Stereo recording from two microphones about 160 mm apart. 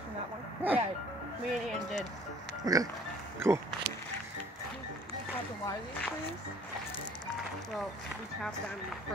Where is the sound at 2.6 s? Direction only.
20° right (ahead or behind).